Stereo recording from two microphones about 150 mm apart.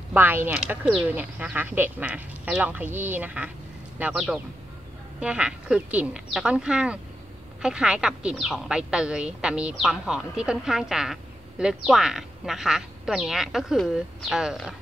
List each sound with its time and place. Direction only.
0.1 s a woman's voice: 10° right (ahead or behind)